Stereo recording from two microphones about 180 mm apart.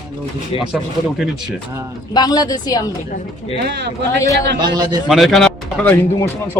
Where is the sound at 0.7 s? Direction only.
5° right (ahead or behind).